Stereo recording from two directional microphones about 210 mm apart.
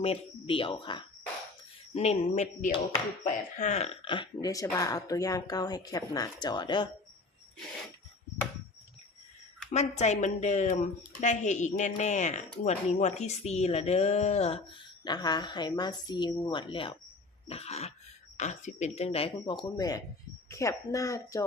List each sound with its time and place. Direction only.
0.0 s speech: 25° left (ahead or behind)
9.7 s speech: 35° left (ahead or behind); by 21.4 s 15° left (ahead or behind)